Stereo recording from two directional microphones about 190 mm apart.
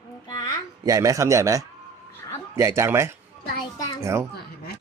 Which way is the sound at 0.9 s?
15° right (ahead or behind).